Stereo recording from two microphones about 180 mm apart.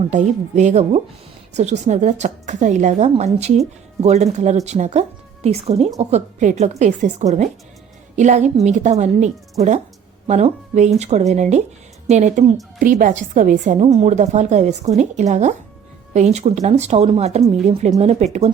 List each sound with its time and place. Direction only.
0.1 s a woman's voice: 40° right (ahead or behind)